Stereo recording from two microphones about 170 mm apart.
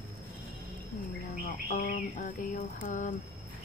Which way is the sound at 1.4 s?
55° left (ahead or behind).